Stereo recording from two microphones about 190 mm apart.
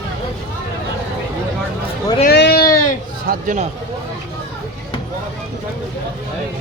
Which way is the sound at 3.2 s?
40° right (ahead or behind).